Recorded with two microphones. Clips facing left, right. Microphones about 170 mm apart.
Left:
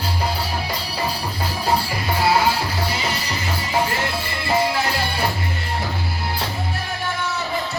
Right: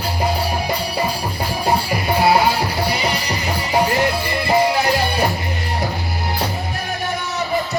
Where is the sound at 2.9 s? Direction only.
15° right (ahead or behind).